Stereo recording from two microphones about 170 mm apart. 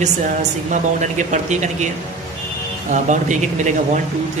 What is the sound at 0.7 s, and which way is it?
Speech, 45° right (ahead or behind).